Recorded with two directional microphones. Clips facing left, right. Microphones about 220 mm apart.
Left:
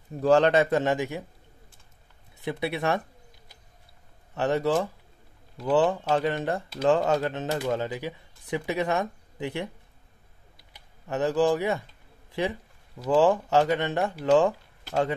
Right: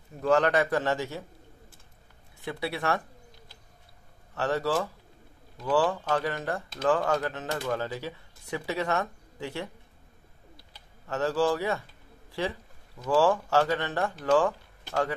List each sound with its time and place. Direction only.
0.2 s speech: 30° left (ahead or behind)
2.4 s speech: 20° left (ahead or behind)
4.4 s speech: 20° left (ahead or behind)
10.7 s speech: 20° left (ahead or behind)
12.3 s a sound: 20° left (ahead or behind)
13.1 s speech: 20° left (ahead or behind)